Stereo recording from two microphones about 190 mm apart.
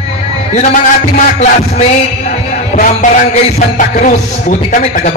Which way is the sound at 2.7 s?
45° left (ahead or behind).